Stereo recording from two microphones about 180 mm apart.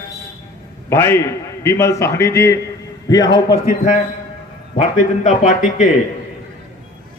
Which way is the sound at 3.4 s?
50° left (ahead or behind).